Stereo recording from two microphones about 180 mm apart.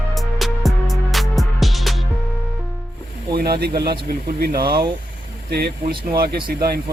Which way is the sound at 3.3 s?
60° right (ahead or behind).